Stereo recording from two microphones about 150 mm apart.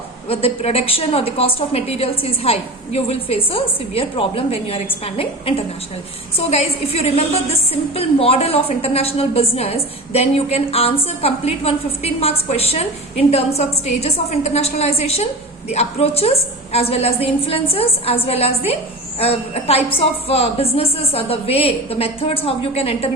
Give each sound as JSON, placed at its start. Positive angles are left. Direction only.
{"t": 0.3, "sound": "a woman's voice", "side_deg": 40}